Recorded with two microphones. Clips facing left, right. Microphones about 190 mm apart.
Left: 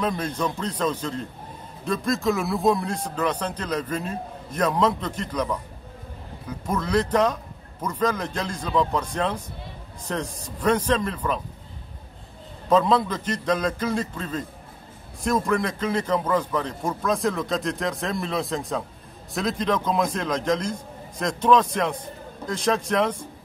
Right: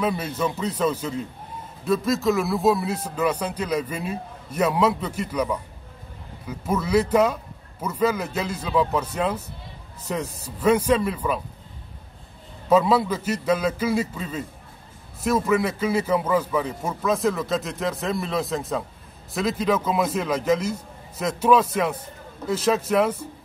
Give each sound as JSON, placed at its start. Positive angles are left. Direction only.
{"t": 0.0, "sound": "speech", "side_deg": -5}
{"t": 12.6, "sound": "a man's voice", "side_deg": -10}